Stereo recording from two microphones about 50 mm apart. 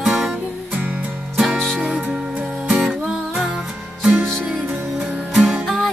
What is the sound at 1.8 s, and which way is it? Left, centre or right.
Music, centre.